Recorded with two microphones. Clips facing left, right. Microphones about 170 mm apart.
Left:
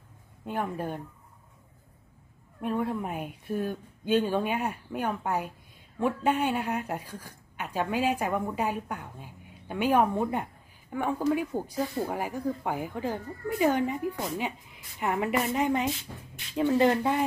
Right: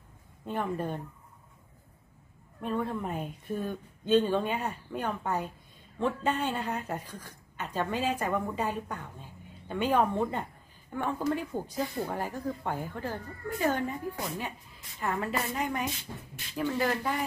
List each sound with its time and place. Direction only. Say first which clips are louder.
0.5 s speech: even; 10° left (ahead or behind)
2.6 s speech: left 2 dB; 10° left (ahead or behind)